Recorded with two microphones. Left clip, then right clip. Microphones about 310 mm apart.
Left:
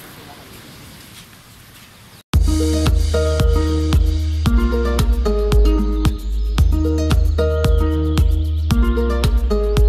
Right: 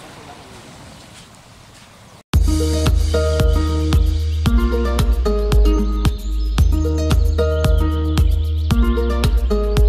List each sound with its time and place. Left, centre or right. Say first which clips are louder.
2.3 s music: left 1 dB; centre